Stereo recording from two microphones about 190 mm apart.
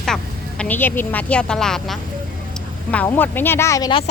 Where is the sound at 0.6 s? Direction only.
10° left (ahead or behind).